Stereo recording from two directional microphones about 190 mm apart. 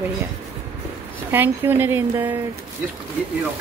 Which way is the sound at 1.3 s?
10° right (ahead or behind).